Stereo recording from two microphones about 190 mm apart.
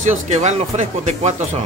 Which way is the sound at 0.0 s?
40° right (ahead or behind).